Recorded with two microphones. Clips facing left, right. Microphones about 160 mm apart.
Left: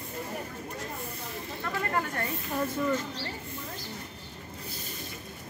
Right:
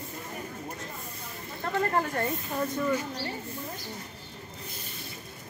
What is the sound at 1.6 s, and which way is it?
Speech, 35° right (ahead or behind).